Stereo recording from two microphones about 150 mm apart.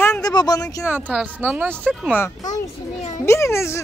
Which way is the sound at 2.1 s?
15° left (ahead or behind).